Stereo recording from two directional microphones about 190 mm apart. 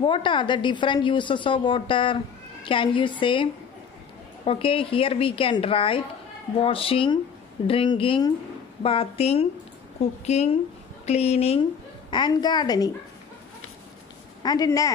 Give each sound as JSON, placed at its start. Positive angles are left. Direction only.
{"t": 0.0, "sound": "a woman's voice", "side_deg": 25}
{"t": 4.5, "sound": "a woman's voice", "side_deg": 30}
{"t": 12.1, "sound": "a woman's voice", "side_deg": 20}
{"t": 14.4, "sound": "a woman's voice", "side_deg": 20}